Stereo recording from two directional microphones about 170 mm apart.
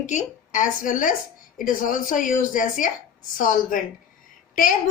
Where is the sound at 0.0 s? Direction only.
45° left (ahead or behind).